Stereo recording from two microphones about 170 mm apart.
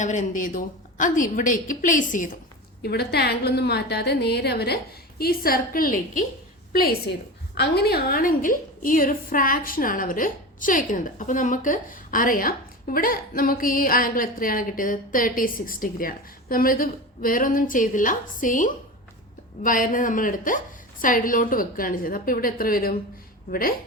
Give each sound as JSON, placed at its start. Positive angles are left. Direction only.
{"t": 0.0, "sound": "a woman's voice", "side_deg": 45}
{"t": 2.8, "sound": "a woman's voice", "side_deg": 70}
{"t": 6.7, "sound": "a woman's voice", "side_deg": 70}